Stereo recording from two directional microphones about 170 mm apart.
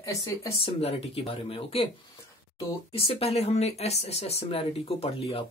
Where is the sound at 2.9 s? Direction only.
35° left (ahead or behind).